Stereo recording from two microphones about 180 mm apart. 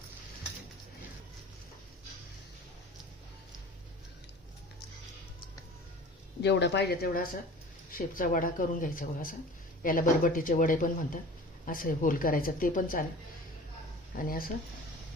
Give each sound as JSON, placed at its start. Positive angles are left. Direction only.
{"t": 6.4, "sound": "speech", "side_deg": 70}
{"t": 14.2, "sound": "speech", "side_deg": 55}